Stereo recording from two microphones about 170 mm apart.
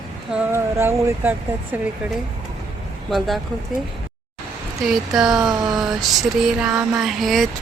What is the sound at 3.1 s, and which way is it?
Speech, centre (ahead or behind).